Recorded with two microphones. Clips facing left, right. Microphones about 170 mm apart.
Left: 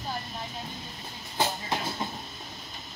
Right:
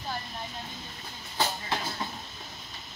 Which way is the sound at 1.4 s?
20° left (ahead or behind).